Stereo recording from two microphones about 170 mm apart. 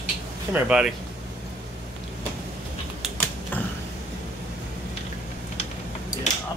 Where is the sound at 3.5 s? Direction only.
10° left (ahead or behind).